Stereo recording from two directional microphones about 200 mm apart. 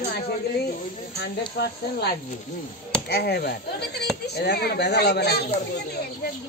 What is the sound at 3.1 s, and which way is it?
Speech, 55° left (ahead or behind).